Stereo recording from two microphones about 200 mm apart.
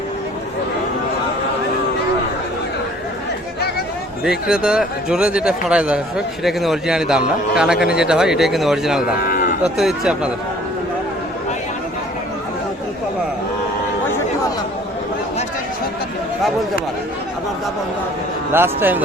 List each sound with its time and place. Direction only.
4.2 s a man's voice: 5° right (ahead or behind)
9.2 s moo: 45° left (ahead or behind)
9.7 s a man's voice: centre (ahead or behind)
18.5 s speech: 10° right (ahead or behind)